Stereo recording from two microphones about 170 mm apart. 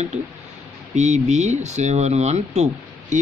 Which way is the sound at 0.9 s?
45° right (ahead or behind).